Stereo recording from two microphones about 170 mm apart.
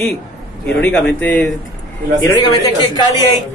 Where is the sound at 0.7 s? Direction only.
5° left (ahead or behind).